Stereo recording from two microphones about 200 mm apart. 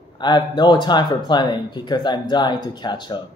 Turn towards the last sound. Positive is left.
turn(degrees=20)  # may be behind; listen again after turning